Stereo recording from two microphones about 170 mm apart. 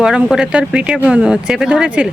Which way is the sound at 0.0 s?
5° right (ahead or behind).